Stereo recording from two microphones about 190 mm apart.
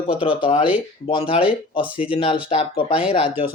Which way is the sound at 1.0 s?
30° left (ahead or behind).